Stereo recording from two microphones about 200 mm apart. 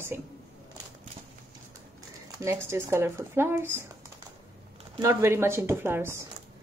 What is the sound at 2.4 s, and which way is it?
Speech, 15° right (ahead or behind).